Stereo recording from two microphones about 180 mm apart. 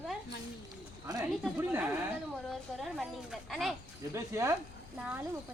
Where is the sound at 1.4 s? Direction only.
10° right (ahead or behind).